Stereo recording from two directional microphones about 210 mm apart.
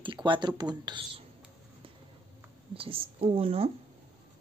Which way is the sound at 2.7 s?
25° right (ahead or behind).